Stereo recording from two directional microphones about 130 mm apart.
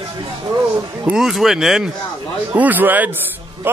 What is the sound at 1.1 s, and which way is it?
A man's voice, centre (ahead or behind).